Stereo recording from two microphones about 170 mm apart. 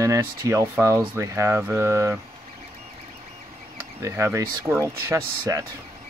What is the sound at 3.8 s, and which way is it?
Speech, 15° right (ahead or behind).